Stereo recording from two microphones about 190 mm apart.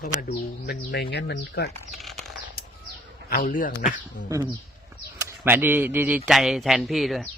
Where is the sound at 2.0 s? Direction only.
Centre (ahead or behind).